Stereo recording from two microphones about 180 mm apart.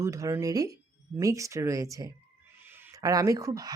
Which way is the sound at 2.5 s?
10° right (ahead or behind).